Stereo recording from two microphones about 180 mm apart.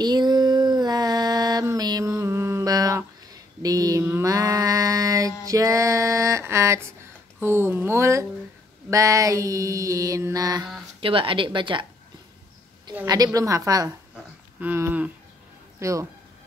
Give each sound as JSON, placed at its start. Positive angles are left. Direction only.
{"t": 0.0, "sound": "female singing", "side_deg": -25}
{"t": 3.6, "sound": "mantra", "side_deg": -20}
{"t": 7.3, "sound": "a sound", "side_deg": -15}
{"t": 8.9, "sound": "mantra", "side_deg": -15}
{"t": 11.0, "sound": "a woman's voice", "side_deg": -30}
{"t": 13.0, "sound": "a woman's voice", "side_deg": -20}
{"t": 14.1, "sound": "a sound", "side_deg": -10}
{"t": 15.8, "sound": "mantra", "side_deg": -15}